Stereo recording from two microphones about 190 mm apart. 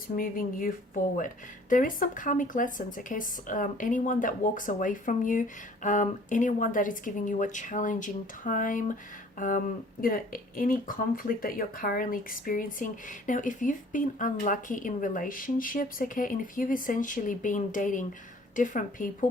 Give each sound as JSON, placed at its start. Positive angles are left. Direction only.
{"t": 0.2, "sound": "speech", "side_deg": 50}
{"t": 1.7, "sound": "speech", "side_deg": 45}